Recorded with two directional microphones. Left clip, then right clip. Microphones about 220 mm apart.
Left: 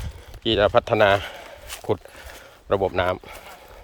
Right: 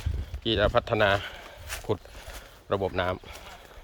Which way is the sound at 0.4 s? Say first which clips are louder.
Left 6 dB; 15° left (ahead or behind).